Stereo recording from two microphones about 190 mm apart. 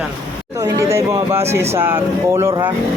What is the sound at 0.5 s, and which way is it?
Speech, 15° right (ahead or behind).